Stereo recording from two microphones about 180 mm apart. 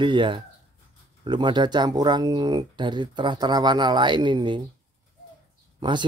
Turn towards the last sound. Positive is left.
turn(degrees=-25)  # may be behind; listen again after turning